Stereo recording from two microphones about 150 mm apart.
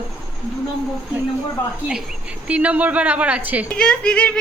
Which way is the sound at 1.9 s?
5° right (ahead or behind).